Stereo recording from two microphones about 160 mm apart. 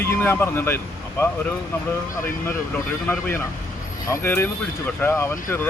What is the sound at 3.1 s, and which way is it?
Speech, 15° left (ahead or behind).